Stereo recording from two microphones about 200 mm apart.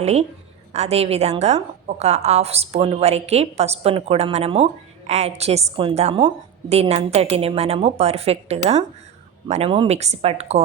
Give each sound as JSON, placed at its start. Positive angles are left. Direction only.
{"t": 0.0, "sound": "a woman's voice", "side_deg": -30}